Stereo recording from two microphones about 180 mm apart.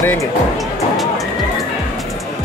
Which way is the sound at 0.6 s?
Centre (ahead or behind).